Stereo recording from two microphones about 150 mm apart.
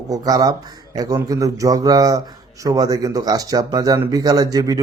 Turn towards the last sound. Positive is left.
turn(degrees=-25)  # may be behind; listen again after turning